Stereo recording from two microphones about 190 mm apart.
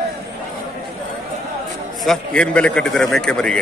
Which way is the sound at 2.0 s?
5° left (ahead or behind).